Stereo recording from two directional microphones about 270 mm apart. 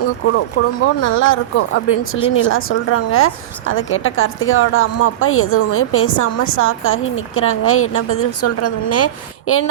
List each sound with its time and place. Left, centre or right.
0.9 s a woman's voice: left